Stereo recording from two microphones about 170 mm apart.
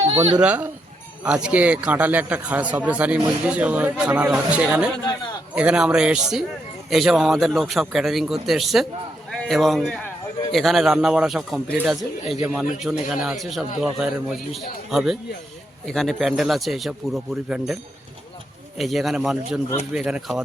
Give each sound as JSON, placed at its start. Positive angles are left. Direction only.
{"t": 0.1, "sound": "speech", "side_deg": -30}
{"t": 0.3, "sound": "a man's voice", "side_deg": -10}
{"t": 18.8, "sound": "a man's voice", "side_deg": 0}